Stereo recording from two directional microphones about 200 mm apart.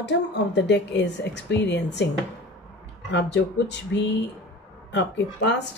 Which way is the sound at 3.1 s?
65° left (ahead or behind).